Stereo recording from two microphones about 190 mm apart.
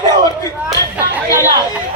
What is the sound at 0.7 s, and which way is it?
Speech, 10° right (ahead or behind).